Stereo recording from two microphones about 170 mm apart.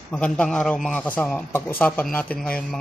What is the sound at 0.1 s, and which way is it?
A man's voice, 5° left (ahead or behind).